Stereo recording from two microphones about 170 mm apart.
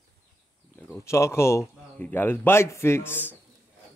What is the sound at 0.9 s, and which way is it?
Speech, 15° left (ahead or behind).